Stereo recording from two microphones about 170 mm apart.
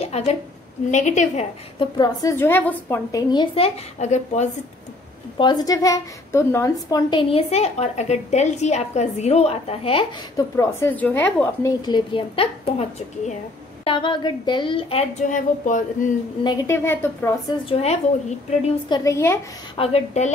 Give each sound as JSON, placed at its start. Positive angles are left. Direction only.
{"t": 0.0, "sound": "a woman's voice", "side_deg": 35}
{"t": 2.0, "sound": "a woman's voice", "side_deg": 15}
{"t": 3.2, "sound": "a woman's voice", "side_deg": 25}
{"t": 5.4, "sound": "a woman's voice", "side_deg": 25}
{"t": 10.3, "sound": "a woman's voice", "side_deg": 20}
{"t": 11.8, "sound": "a woman's voice", "side_deg": 25}
{"t": 13.8, "sound": "a woman's voice", "side_deg": 30}
{"t": 16.4, "sound": "a woman's voice", "side_deg": 20}
{"t": 17.6, "sound": "a woman's voice", "side_deg": 35}
{"t": 18.9, "sound": "a woman's voice", "side_deg": 20}
{"t": 19.8, "sound": "a woman's voice", "side_deg": 40}